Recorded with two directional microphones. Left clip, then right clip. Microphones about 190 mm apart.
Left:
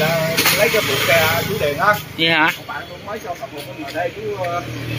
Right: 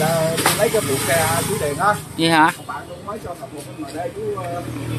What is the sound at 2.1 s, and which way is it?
Speech, 10° right (ahead or behind).